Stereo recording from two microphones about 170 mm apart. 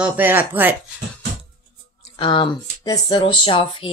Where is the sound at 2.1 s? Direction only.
30° left (ahead or behind).